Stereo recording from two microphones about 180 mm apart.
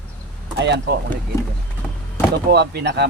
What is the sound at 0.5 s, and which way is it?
Speech, 70° right (ahead or behind).